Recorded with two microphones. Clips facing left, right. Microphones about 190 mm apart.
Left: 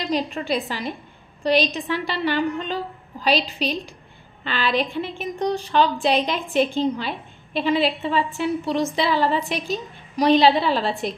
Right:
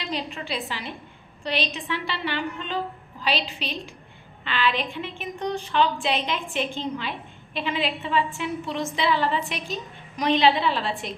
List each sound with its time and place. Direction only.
0.0 s a woman's voice: 45° left (ahead or behind)